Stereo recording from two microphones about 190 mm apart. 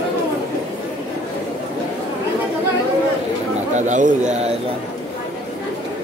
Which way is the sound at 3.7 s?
40° right (ahead or behind).